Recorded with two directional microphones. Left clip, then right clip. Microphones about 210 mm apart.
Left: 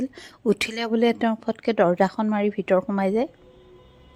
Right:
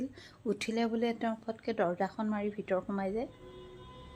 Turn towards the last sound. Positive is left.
turn(degrees=40)  # may be behind; listen again after turning